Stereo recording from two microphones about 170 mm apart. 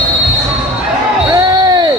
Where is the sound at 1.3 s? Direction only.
25° right (ahead or behind).